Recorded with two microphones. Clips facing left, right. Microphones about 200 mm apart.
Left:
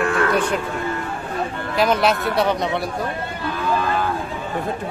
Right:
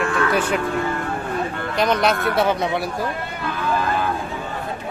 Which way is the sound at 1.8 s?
5° left (ahead or behind).